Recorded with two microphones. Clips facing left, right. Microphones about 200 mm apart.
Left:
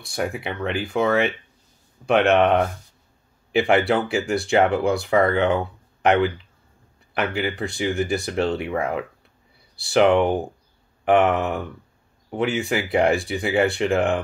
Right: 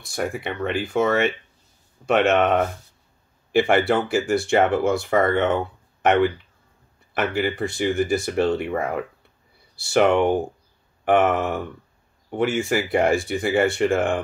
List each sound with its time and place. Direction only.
0.1 s speech: centre (ahead or behind)